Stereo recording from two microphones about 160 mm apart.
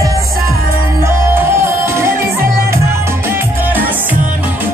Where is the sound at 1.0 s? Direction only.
15° right (ahead or behind).